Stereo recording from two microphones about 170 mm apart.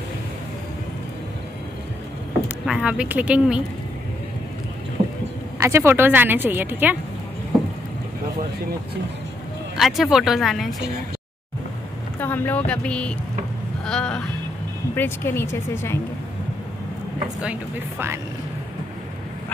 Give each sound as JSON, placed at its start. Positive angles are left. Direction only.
{"t": 2.4, "sound": "speech", "side_deg": -5}
{"t": 5.0, "sound": "a sound", "side_deg": -30}
{"t": 5.6, "sound": "a woman's voice", "side_deg": -15}
{"t": 9.8, "sound": "speech", "side_deg": 0}
{"t": 12.2, "sound": "speech", "side_deg": 10}
{"t": 13.8, "sound": "a sound", "side_deg": 5}
{"t": 15.0, "sound": "speech", "side_deg": 15}
{"t": 17.4, "sound": "a woman's voice", "side_deg": -10}